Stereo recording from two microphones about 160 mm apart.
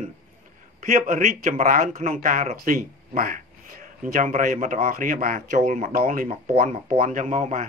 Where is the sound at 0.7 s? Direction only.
50° right (ahead or behind).